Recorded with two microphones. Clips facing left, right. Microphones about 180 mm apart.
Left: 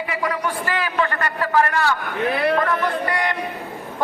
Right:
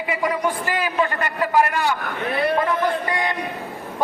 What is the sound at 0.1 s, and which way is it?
A man's voice, 20° right (ahead or behind).